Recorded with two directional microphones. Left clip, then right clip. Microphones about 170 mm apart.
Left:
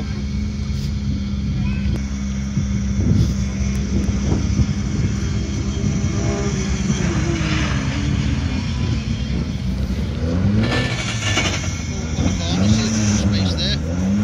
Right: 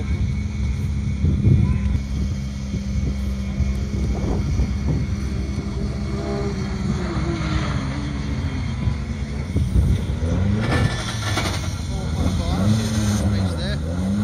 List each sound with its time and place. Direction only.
7.1 s vehicle: 5° left (ahead or behind)
10.6 s vehicle: 50° left (ahead or behind)
12.2 s vehicle: 5° right (ahead or behind)